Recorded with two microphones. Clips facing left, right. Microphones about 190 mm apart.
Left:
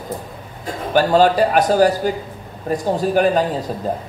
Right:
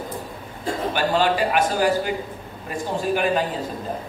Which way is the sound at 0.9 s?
40° left (ahead or behind).